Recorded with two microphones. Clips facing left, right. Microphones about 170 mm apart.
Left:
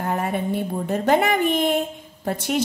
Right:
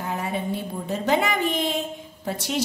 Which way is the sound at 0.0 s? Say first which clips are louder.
Left 4 dB; 55° left (ahead or behind).